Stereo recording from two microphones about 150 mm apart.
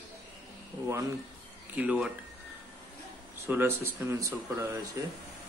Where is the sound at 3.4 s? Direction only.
15° right (ahead or behind).